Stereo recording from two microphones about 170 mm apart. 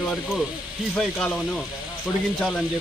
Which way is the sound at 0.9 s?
5° left (ahead or behind).